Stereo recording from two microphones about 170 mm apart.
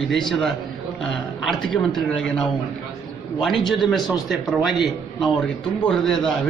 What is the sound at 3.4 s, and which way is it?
A man's voice, centre (ahead or behind).